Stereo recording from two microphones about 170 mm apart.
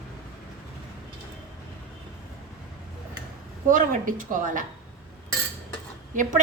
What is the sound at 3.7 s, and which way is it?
Speech, 55° right (ahead or behind).